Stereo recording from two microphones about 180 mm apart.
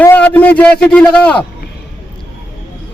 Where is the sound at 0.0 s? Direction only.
10° left (ahead or behind).